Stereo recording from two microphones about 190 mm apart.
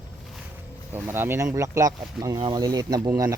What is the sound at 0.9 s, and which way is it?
Speech, 10° right (ahead or behind).